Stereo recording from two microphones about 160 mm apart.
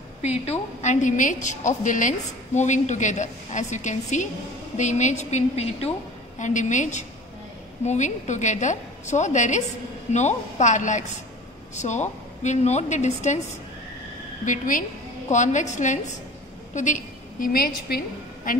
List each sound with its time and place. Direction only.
0.5 s a woman's voice: 50° left (ahead or behind)
14.4 s a woman's voice: 55° left (ahead or behind)